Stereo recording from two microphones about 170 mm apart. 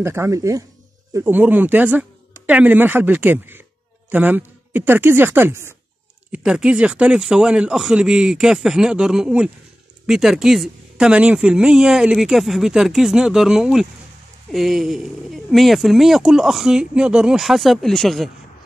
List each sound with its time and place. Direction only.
0.0 s speech: 15° right (ahead or behind); by 18.3 s centre (ahead or behind)